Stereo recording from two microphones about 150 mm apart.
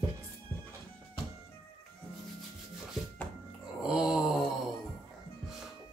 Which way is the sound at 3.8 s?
5° right (ahead or behind).